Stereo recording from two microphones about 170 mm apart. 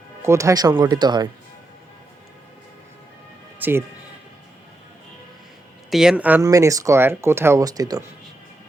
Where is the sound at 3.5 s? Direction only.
10° right (ahead or behind).